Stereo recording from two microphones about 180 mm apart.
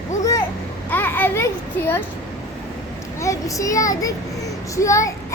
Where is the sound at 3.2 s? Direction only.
15° left (ahead or behind).